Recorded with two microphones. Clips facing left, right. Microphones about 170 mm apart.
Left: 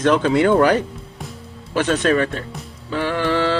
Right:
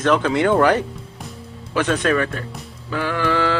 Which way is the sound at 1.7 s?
35° left (ahead or behind).